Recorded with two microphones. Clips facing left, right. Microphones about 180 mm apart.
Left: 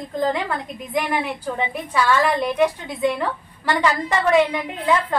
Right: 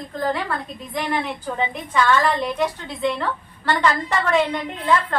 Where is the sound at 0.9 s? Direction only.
10° left (ahead or behind).